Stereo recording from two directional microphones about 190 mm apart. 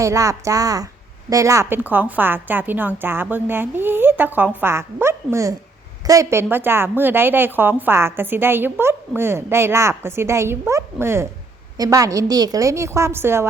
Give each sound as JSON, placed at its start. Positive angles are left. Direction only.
{"t": 0.0, "sound": "a woman's voice", "side_deg": -15}